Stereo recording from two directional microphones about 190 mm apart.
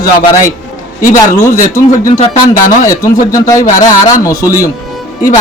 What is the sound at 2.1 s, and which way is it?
Speech, 35° left (ahead or behind).